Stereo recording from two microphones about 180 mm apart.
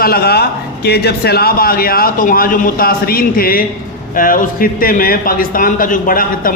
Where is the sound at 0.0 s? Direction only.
60° left (ahead or behind).